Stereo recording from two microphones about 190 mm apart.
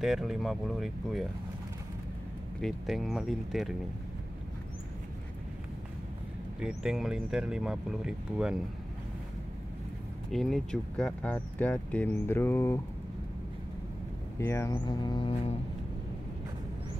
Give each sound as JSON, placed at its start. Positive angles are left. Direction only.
{"t": 0.0, "sound": "speech", "side_deg": 0}
{"t": 2.6, "sound": "speech", "side_deg": 0}
{"t": 6.8, "sound": "speech", "side_deg": -5}
{"t": 10.3, "sound": "speech", "side_deg": 5}
{"t": 14.4, "sound": "speech", "side_deg": 15}